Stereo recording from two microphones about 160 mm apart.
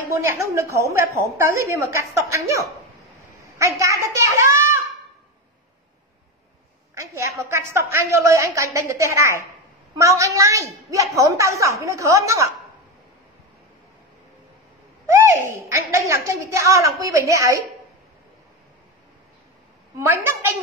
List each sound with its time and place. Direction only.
0.1 s a woman's voice: 15° right (ahead or behind)
7.0 s a woman's voice: 20° right (ahead or behind)
15.0 s a woman's voice: 15° right (ahead or behind)